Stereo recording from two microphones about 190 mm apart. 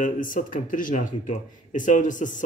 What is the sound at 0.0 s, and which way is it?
Speech, 45° left (ahead or behind).